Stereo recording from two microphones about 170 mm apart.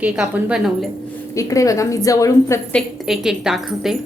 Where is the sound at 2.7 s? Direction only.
Centre (ahead or behind).